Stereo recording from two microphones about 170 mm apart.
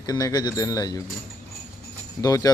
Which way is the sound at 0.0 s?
20° left (ahead or behind).